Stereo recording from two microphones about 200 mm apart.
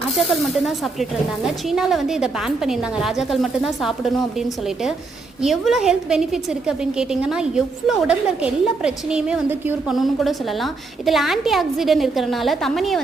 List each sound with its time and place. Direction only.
0.2 s a woman's voice: centre (ahead or behind)